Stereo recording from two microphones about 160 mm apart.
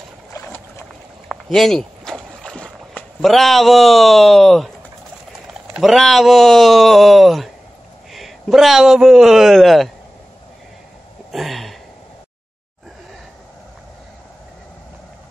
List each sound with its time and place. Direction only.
0.3 s boat: 15° left (ahead or behind)
1.3 s boat: centre (ahead or behind)
5.7 s a man's voice: centre (ahead or behind)
11.3 s speech: centre (ahead or behind)